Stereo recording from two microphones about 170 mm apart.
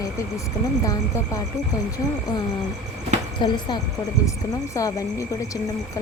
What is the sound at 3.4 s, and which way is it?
Speech, 25° left (ahead or behind).